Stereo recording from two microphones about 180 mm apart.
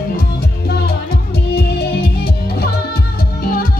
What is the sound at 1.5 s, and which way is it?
Music, 65° left (ahead or behind).